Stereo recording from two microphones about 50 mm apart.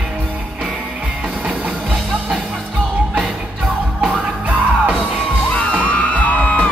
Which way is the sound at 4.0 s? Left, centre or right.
Right.